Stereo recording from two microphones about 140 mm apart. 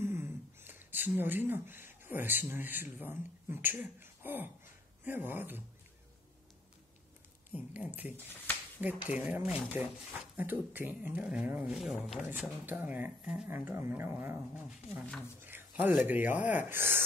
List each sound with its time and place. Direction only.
0.0 s speech: 15° right (ahead or behind)
7.5 s speech: 10° right (ahead or behind)
8.3 s a sound: 15° left (ahead or behind)
9.2 s speech: 10° right (ahead or behind)
15.4 s a sound: 15° right (ahead or behind)
16.1 s speech: 10° right (ahead or behind)